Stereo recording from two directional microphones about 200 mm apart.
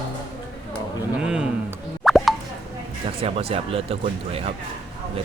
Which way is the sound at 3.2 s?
30° right (ahead or behind).